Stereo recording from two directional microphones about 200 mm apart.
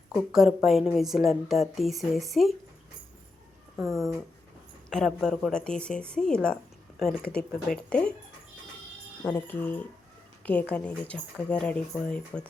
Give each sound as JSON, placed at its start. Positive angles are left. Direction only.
{"t": 0.1, "sound": "a woman's voice", "side_deg": -5}
{"t": 3.8, "sound": "speech", "side_deg": -15}
{"t": 4.9, "sound": "a woman's voice", "side_deg": 5}
{"t": 9.2, "sound": "a woman's voice", "side_deg": 10}